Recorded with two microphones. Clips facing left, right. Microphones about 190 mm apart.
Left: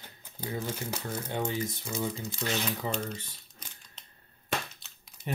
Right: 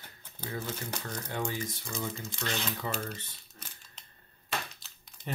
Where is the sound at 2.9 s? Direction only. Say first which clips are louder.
Left 3 dB; 5° right (ahead or behind).